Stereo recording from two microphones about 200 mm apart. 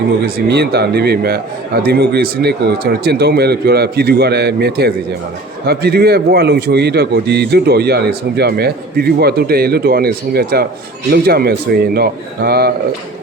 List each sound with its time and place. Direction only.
0.3 s a man's voice: 50° right (ahead or behind)